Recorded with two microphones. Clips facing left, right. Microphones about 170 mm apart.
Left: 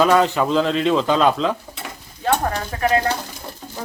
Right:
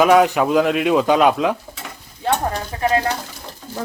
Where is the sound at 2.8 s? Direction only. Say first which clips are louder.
Even; 20° right (ahead or behind).